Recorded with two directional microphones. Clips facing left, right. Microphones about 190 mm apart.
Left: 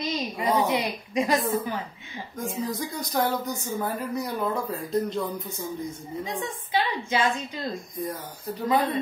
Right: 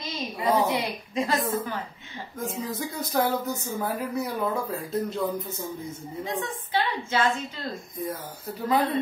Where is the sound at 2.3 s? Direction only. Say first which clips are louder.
Left 1 dB; centre (ahead or behind).